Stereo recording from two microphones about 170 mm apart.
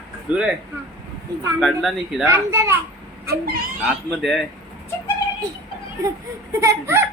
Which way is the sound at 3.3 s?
70° right (ahead or behind).